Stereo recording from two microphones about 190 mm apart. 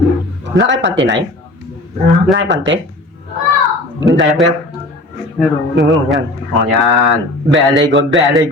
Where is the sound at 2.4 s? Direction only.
70° right (ahead or behind).